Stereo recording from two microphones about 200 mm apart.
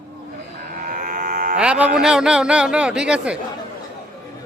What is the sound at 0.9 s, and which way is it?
Livestock, 40° right (ahead or behind).